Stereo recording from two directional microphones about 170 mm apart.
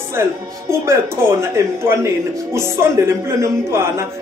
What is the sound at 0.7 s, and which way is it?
A man's voice, 15° right (ahead or behind).